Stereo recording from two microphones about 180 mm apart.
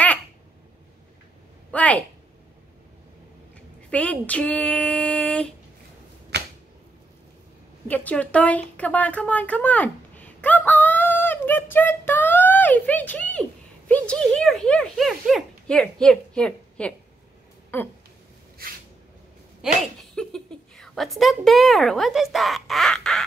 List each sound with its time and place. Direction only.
1.7 s a woman's voice: 10° left (ahead or behind)
3.9 s speech: 5° left (ahead or behind)
6.3 s a sound: 70° right (ahead or behind)
7.9 s a woman's voice: 10° left (ahead or behind)
17.7 s a sound: 10° left (ahead or behind)
19.6 s a woman's voice: centre (ahead or behind)